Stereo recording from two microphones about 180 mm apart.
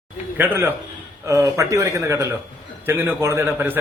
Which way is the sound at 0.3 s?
10° right (ahead or behind).